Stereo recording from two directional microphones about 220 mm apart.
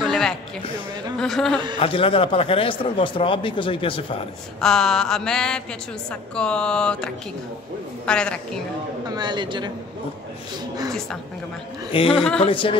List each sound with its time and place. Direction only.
0.0 s a sound: centre (ahead or behind)
1.2 s mantra: centre (ahead or behind)
1.8 s speech: 25° left (ahead or behind)
4.6 s mantra: centre (ahead or behind)
9.1 s a man's voice: 20° right (ahead or behind)
11.9 s speech: 25° left (ahead or behind)